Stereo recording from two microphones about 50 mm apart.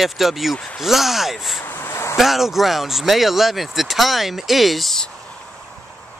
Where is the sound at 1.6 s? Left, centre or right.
Left.